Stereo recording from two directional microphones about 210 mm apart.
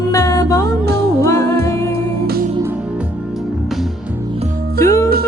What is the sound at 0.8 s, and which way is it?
Music, 50° right (ahead or behind).